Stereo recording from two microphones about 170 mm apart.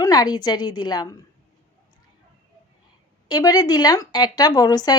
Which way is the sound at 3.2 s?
20° left (ahead or behind).